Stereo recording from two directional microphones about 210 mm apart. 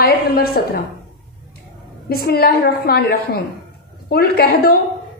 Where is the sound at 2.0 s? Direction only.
45° left (ahead or behind).